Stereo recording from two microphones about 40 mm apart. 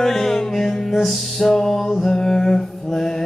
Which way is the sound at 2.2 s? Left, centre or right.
Centre.